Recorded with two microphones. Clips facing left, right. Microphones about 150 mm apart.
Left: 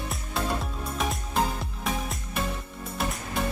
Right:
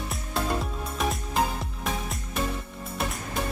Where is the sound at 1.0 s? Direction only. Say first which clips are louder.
Right 1 dB; centre (ahead or behind).